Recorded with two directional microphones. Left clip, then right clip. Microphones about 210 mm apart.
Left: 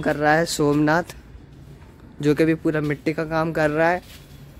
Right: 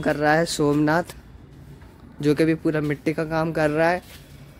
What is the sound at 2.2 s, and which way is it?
Speech, centre (ahead or behind).